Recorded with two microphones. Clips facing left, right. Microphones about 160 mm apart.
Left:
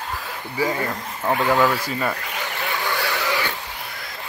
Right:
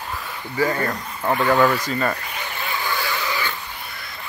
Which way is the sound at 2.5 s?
70° left (ahead or behind).